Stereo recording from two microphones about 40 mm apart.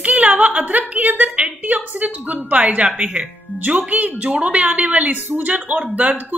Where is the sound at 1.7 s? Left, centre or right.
Right.